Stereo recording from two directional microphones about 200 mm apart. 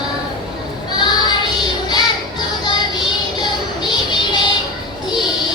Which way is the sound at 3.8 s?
20° left (ahead or behind).